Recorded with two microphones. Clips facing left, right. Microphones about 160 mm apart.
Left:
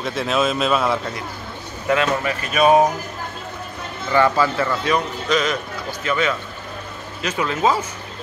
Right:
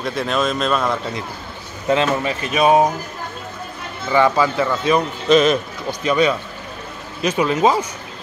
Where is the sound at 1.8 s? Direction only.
25° right (ahead or behind).